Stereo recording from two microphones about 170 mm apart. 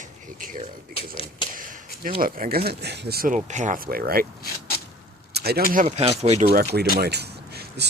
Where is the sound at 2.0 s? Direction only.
55° right (ahead or behind).